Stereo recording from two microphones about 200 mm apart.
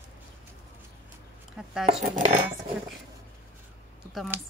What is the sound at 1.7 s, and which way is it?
Speech, centre (ahead or behind).